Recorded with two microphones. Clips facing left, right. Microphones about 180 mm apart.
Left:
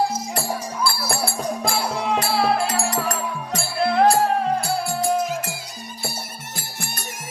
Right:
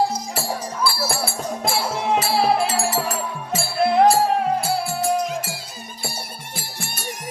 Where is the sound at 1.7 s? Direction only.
25° right (ahead or behind).